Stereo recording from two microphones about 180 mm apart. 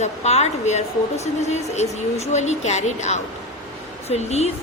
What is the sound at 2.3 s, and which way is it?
A woman's voice, 40° left (ahead or behind).